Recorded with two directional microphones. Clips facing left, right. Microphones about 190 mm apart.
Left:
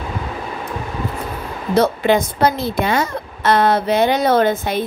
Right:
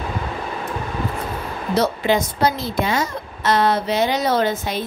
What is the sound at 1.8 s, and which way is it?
Speech, 55° left (ahead or behind).